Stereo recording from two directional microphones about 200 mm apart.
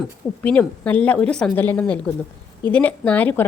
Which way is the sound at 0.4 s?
5° left (ahead or behind).